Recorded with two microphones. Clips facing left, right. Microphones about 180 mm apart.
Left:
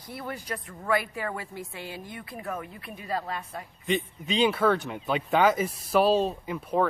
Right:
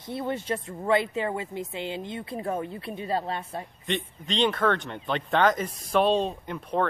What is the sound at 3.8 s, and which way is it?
Speech, 5° left (ahead or behind).